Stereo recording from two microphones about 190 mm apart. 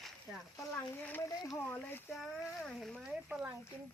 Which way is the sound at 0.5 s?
15° left (ahead or behind).